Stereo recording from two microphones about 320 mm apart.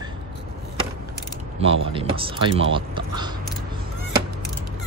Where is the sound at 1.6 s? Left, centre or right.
Centre.